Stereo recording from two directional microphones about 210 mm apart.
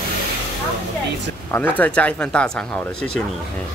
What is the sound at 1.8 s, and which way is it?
Speech, 5° left (ahead or behind).